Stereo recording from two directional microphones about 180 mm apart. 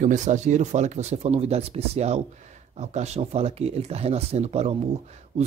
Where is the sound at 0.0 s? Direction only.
40° right (ahead or behind).